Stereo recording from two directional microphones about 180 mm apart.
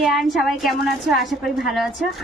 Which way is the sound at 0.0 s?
Centre (ahead or behind).